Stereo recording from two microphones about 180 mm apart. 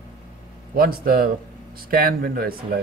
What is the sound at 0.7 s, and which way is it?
Speech, 55° right (ahead or behind).